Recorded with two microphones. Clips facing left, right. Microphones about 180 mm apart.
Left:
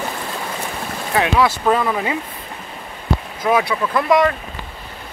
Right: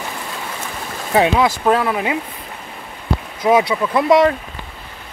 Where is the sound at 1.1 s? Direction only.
25° right (ahead or behind).